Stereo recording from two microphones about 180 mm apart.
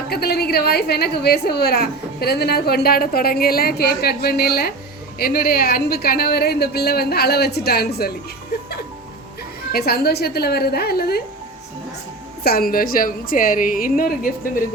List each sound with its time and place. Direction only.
0.1 s a woman's voice: 60° left (ahead or behind)
9.7 s a woman's voice: 60° left (ahead or behind)
12.4 s a woman's voice: 55° left (ahead or behind)